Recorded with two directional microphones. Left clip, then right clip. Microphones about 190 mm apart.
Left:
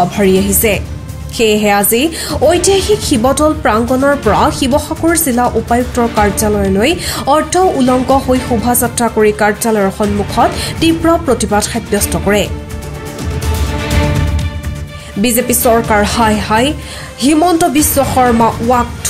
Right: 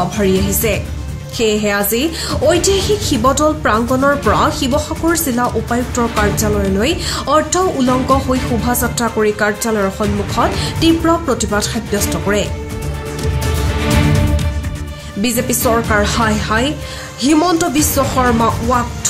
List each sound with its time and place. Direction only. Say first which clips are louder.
0.1 s a woman's voice: left 4 dB; 15° left (ahead or behind)
15.2 s a woman's voice: left 5 dB; 15° left (ahead or behind)